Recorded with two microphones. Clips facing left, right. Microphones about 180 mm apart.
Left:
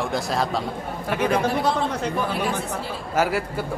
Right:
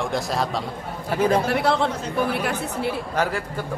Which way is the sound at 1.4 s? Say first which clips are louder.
Right 1 dB; 70° right (ahead or behind).